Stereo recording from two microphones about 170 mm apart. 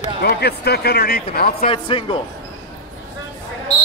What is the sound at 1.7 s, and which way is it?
Speech, 30° left (ahead or behind).